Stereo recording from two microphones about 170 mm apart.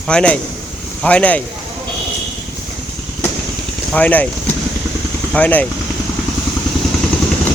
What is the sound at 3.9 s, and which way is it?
Speech, 10° left (ahead or behind).